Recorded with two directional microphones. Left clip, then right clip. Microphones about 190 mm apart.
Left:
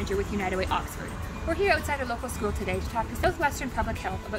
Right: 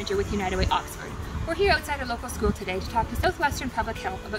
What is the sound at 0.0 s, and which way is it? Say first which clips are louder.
Speech: right 2 dB; 5° left (ahead or behind).